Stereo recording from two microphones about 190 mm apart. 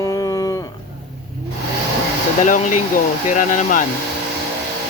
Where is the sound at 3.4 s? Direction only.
40° left (ahead or behind).